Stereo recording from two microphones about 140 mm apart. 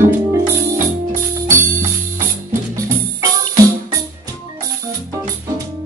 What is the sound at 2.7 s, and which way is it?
Music, 25° right (ahead or behind).